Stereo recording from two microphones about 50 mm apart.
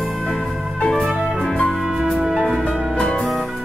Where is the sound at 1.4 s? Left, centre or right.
Centre.